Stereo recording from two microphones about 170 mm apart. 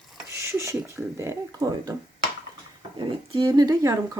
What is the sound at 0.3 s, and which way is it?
Speech, 15° right (ahead or behind).